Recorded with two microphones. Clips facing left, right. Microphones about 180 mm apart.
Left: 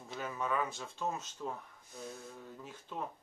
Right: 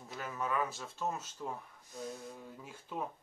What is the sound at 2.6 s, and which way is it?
Speech, 10° right (ahead or behind).